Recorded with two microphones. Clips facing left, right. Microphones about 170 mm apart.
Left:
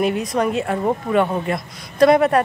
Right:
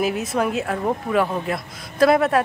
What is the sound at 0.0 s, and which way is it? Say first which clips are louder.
Speech: left 2 dB; 5° right (ahead or behind).